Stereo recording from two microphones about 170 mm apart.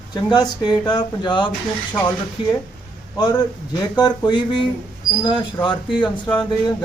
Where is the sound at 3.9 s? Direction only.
25° left (ahead or behind).